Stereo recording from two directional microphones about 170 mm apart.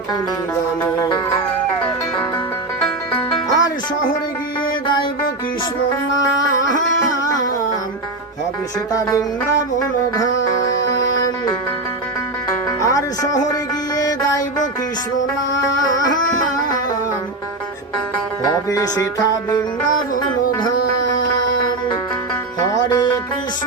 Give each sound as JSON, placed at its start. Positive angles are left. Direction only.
{"t": 0.8, "sound": "music", "side_deg": 15}
{"t": 3.2, "sound": "music", "side_deg": 30}
{"t": 8.9, "sound": "music", "side_deg": 20}
{"t": 12.8, "sound": "music", "side_deg": 20}
{"t": 15.9, "sound": "music", "side_deg": 20}
{"t": 18.7, "sound": "music", "side_deg": 20}
{"t": 22.6, "sound": "music", "side_deg": 25}